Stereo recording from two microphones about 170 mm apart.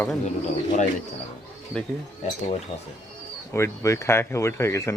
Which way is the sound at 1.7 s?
5° left (ahead or behind).